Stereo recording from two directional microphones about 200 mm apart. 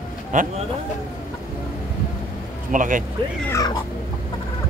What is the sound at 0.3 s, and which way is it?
Speech, 40° right (ahead or behind).